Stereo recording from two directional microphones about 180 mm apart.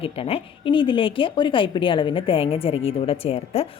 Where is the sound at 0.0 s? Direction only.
30° left (ahead or behind).